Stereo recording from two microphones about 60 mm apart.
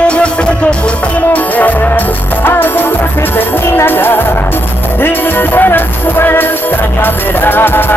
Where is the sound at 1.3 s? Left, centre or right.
Left.